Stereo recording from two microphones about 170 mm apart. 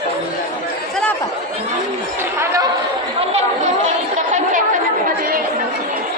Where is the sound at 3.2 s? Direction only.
40° right (ahead or behind).